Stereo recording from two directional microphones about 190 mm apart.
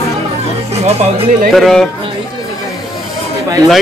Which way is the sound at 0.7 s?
35° right (ahead or behind).